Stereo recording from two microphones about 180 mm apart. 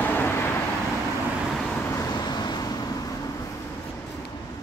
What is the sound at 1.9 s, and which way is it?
Vehicle, 20° left (ahead or behind).